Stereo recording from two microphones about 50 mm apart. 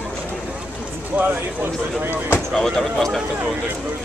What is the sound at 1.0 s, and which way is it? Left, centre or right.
Speech, right.